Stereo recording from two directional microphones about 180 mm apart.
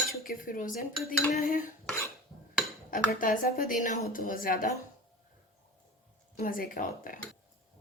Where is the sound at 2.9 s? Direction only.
50° left (ahead or behind).